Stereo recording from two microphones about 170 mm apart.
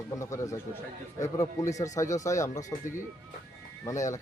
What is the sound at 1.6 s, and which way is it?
Speech, 20° left (ahead or behind).